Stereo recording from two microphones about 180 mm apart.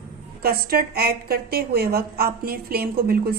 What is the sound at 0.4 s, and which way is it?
A woman's voice, 55° right (ahead or behind).